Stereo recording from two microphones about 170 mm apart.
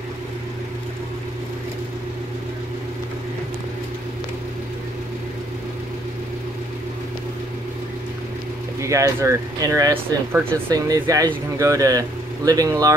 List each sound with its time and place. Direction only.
8.8 s speech: 15° right (ahead or behind)